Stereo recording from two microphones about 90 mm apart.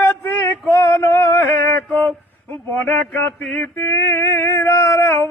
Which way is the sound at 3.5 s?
20° left (ahead or behind).